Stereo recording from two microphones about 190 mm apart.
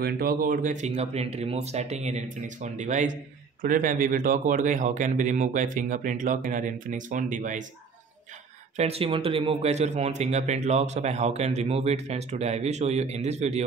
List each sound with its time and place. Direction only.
0.0 s a man's voice: 50° right (ahead or behind)
8.7 s a man's voice: 30° right (ahead or behind)